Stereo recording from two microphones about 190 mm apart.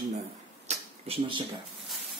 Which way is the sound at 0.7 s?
30° right (ahead or behind).